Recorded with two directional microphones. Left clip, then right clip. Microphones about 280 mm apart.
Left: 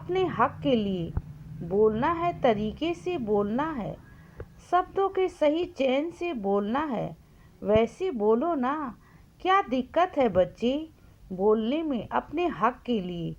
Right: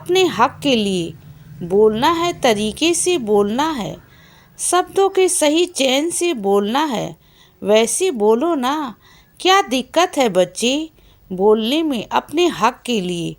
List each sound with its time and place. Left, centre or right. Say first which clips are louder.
0.1 s a woman's voice: right 10 dB; centre